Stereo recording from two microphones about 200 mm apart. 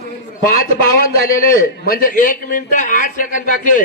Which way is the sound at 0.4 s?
45° left (ahead or behind).